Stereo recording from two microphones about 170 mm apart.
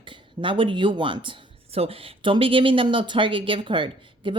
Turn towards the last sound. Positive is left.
turn(degrees=-30)  # may be behind; listen again after turning